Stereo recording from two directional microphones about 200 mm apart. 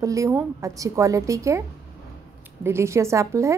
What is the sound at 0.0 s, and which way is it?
A woman's voice, 15° right (ahead or behind).